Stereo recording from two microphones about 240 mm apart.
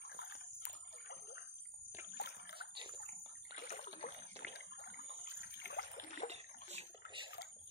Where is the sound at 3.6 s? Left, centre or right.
Left.